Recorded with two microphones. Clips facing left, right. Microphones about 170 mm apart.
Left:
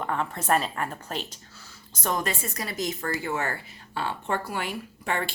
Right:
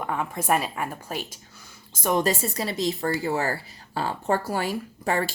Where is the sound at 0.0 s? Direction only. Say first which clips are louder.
Right 1 dB; 10° right (ahead or behind).